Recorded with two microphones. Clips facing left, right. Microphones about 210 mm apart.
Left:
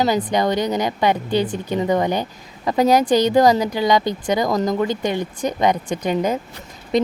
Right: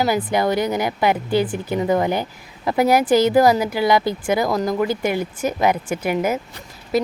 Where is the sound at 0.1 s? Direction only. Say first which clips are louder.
Even; 10° right (ahead or behind).